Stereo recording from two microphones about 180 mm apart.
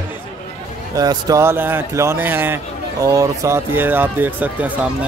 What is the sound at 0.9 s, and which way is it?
Speech, 20° right (ahead or behind).